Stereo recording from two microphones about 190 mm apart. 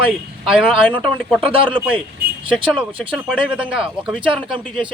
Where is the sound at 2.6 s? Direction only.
25° right (ahead or behind).